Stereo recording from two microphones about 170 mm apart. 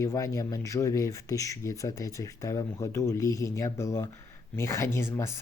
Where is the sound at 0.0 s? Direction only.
20° left (ahead or behind).